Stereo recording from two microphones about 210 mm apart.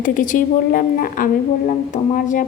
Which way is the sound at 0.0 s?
40° left (ahead or behind).